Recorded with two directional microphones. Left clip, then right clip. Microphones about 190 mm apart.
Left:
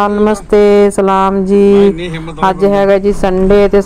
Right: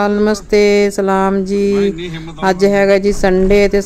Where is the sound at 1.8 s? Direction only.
45° right (ahead or behind).